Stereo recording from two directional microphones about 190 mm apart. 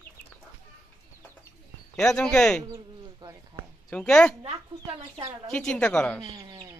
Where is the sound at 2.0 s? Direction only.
5° left (ahead or behind).